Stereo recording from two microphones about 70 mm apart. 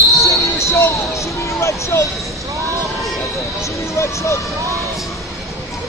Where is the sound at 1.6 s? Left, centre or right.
Left.